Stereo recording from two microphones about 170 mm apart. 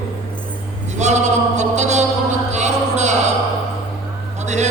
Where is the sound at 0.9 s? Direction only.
45° right (ahead or behind).